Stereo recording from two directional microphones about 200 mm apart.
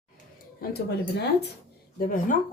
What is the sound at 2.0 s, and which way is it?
Speech, 40° left (ahead or behind).